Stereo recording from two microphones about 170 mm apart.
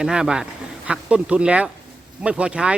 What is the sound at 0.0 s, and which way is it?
A man's voice, 5° right (ahead or behind).